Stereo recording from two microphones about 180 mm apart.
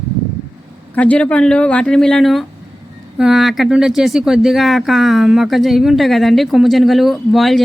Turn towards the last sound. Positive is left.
turn(degrees=0)  # may be behind; listen again after turning